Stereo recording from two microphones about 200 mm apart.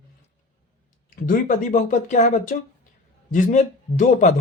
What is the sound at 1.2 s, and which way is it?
Speech, 40° left (ahead or behind).